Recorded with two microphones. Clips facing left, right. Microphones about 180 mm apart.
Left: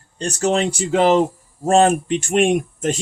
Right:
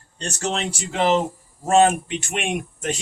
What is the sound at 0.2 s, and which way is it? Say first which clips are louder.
Speech: left 7 dB; 45° left (ahead or behind).